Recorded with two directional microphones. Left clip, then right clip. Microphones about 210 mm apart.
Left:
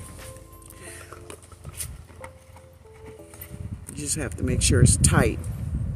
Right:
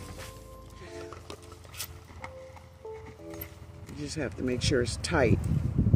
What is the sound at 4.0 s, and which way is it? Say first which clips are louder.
Speech: left 3 dB; 20° left (ahead or behind).